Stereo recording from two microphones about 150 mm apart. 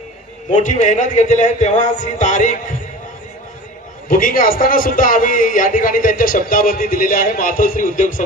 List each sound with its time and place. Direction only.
0.5 s a man's voice: 50° left (ahead or behind)
4.1 s a man's voice: 65° left (ahead or behind)